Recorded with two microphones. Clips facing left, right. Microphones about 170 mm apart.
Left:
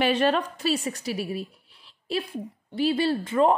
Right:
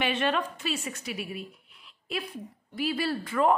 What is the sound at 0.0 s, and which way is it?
A woman's voice, 35° left (ahead or behind).